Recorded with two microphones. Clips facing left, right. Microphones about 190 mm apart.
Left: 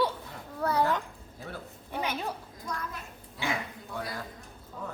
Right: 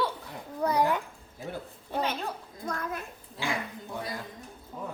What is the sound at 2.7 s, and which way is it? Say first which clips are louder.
Speech: right 4 dB; 50° right (ahead or behind).